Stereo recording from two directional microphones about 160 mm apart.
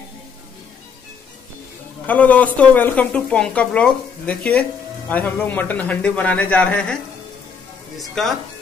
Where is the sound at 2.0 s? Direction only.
10° left (ahead or behind).